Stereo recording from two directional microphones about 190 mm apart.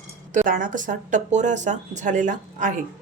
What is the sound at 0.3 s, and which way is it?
Speech, 45° right (ahead or behind).